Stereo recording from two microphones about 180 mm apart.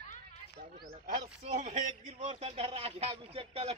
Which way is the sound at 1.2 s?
35° right (ahead or behind).